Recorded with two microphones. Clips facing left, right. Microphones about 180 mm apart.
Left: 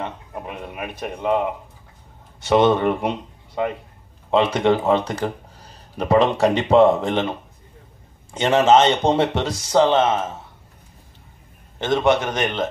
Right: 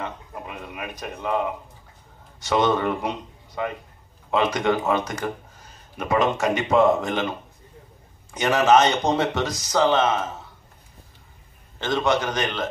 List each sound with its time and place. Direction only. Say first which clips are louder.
0.0 s speech: left 3 dB; 25° left (ahead or behind)
11.8 s speech: left 4 dB; 25° left (ahead or behind)